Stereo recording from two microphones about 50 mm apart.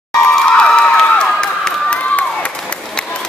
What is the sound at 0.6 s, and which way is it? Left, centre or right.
Cheering, centre.